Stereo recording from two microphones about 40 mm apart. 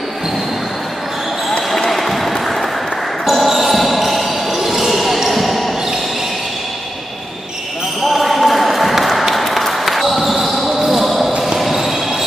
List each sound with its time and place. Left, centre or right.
1.7 s basketball bounce: centre
8.0 s a sound: centre
10.8 s basketball bounce: centre